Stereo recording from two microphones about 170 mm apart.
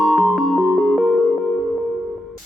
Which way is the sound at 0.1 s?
Centre (ahead or behind).